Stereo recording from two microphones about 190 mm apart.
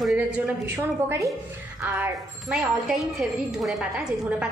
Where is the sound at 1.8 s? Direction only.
10° right (ahead or behind).